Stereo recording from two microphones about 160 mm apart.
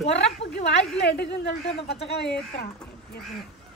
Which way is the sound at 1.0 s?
90° left.